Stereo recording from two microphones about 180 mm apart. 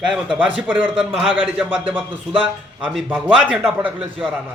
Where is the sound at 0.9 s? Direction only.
5° right (ahead or behind).